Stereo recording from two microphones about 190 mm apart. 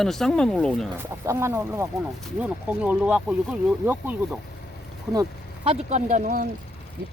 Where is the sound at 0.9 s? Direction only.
15° right (ahead or behind).